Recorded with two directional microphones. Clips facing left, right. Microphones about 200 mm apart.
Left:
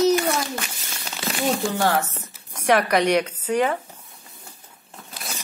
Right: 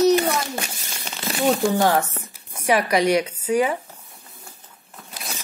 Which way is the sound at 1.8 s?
15° right (ahead or behind).